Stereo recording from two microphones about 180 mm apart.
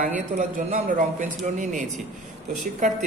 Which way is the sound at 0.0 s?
45° right (ahead or behind).